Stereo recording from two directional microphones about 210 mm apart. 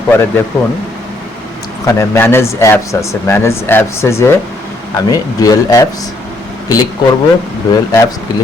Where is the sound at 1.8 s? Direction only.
10° left (ahead or behind).